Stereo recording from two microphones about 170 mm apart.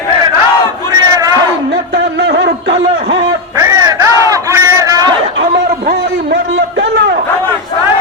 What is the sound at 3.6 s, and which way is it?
Crowd, 20° right (ahead or behind).